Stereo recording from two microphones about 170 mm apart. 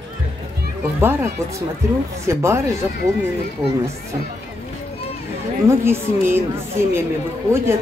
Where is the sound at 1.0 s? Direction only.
15° right (ahead or behind).